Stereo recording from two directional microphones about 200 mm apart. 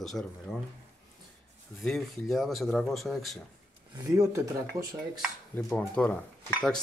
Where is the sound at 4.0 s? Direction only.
15° right (ahead or behind).